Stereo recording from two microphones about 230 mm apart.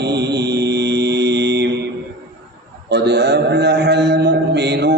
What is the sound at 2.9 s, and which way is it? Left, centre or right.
Mantra, right.